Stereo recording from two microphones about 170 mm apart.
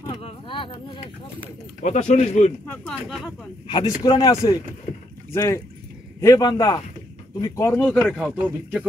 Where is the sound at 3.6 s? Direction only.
30° left (ahead or behind).